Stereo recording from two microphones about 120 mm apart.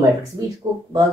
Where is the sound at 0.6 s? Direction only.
35° right (ahead or behind).